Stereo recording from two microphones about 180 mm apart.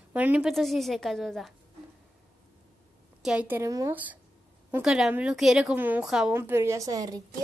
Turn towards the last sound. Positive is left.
turn(degrees=-20)  # may be behind; listen again after turning